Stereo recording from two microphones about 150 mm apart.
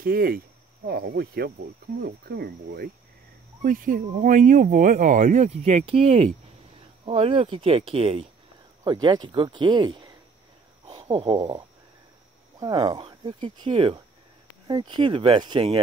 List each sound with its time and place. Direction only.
0.0 s speech: 75° right (ahead or behind)
0.8 s speech: 90° right
3.6 s speech: 65° right (ahead or behind); by 8.3 s 40° right (ahead or behind)
8.8 s speech: 30° right (ahead or behind)
11.3 s speech: 25° right (ahead or behind)